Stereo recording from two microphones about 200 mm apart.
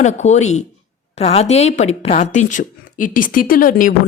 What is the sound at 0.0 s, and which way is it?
A woman's voice, 35° left (ahead or behind).